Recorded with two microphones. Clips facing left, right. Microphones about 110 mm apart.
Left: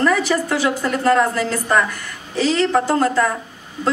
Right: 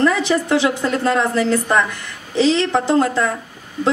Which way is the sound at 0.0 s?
20° right (ahead or behind).